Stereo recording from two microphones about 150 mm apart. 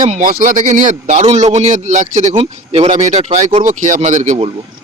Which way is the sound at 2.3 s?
40° right (ahead or behind).